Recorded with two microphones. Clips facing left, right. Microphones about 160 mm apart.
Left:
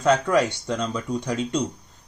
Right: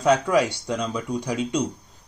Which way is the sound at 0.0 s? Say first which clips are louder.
Even; 10° right (ahead or behind).